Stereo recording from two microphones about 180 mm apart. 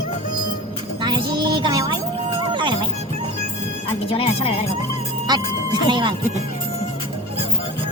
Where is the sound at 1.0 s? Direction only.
25° right (ahead or behind).